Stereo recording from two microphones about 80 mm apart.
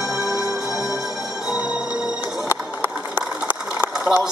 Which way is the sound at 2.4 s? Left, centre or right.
Right.